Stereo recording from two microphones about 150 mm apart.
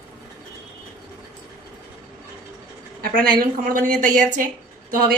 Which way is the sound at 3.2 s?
75° right (ahead or behind).